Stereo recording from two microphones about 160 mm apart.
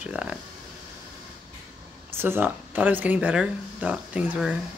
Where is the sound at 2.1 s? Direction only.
15° right (ahead or behind).